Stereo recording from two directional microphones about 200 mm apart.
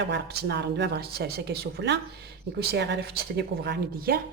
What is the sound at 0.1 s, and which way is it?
Speech, 55° right (ahead or behind).